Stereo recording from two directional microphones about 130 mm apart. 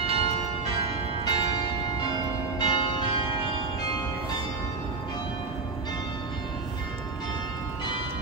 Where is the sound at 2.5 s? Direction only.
35° left (ahead or behind).